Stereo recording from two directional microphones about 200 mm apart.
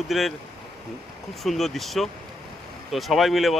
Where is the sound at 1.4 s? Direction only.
Centre (ahead or behind).